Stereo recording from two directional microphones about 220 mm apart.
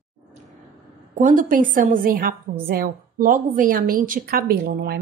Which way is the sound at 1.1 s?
35° right (ahead or behind).